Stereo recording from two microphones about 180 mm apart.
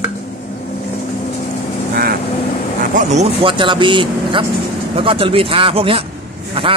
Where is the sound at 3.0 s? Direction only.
40° right (ahead or behind).